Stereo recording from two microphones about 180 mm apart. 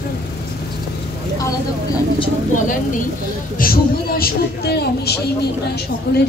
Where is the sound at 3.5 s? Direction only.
55° left (ahead or behind).